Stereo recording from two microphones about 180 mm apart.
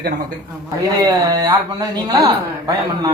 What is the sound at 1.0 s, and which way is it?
A man's voice, 20° right (ahead or behind).